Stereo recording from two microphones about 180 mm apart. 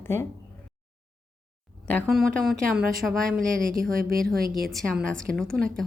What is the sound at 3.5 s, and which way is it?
Speech, 50° right (ahead or behind).